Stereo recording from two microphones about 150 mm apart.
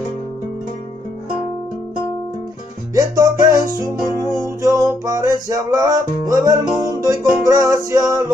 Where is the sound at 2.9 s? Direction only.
20° right (ahead or behind).